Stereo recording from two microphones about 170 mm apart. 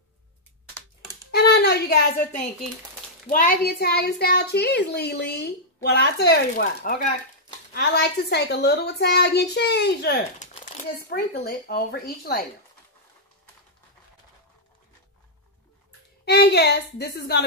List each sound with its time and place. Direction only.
1.3 s hands: 70° left (ahead or behind)
3.3 s a child's voice: 60° left (ahead or behind)
10.4 s crumpling: 45° left (ahead or behind)
11.0 s a woman's voice: 65° left (ahead or behind)
16.3 s a child's voice: 75° left (ahead or behind)